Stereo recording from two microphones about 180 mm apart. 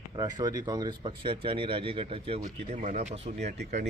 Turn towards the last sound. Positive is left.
turn(degrees=-40)  # may be behind; listen again after turning